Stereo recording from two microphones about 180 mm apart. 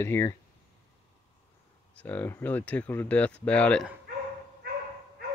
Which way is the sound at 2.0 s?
10° left (ahead or behind).